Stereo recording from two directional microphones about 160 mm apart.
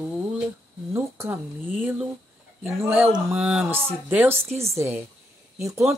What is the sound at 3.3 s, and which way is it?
A woman's voice, 5° right (ahead or behind).